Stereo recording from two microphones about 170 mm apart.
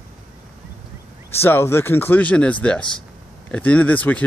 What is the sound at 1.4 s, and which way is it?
Speech, 15° left (ahead or behind).